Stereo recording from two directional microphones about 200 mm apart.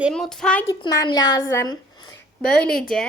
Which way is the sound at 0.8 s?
20° left (ahead or behind).